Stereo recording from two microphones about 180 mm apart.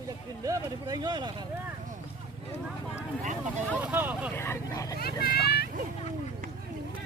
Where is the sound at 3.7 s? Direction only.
10° right (ahead or behind).